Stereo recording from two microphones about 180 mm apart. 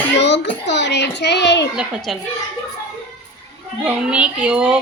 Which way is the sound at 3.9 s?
5° right (ahead or behind).